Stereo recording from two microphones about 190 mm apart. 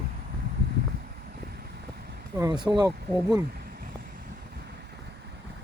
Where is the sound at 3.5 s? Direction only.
55° right (ahead or behind).